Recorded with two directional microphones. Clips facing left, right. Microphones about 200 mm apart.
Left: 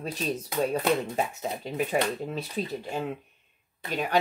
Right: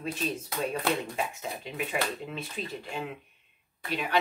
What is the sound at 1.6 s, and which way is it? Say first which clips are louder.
Speech: left 5 dB; 40° left (ahead or behind).